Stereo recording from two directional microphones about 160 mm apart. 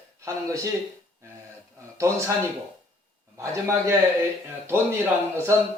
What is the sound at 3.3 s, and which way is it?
Speech, 15° right (ahead or behind).